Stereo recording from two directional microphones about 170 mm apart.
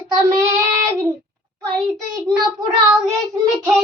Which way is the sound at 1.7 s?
15° right (ahead or behind).